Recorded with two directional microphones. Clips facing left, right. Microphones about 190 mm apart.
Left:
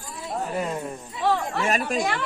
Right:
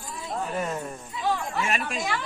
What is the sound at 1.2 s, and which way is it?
Chatter, 65° left (ahead or behind).